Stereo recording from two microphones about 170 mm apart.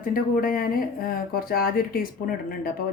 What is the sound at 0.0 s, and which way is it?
Speech, 55° left (ahead or behind).